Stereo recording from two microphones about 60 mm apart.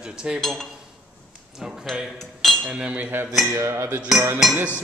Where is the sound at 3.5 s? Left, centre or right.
Right.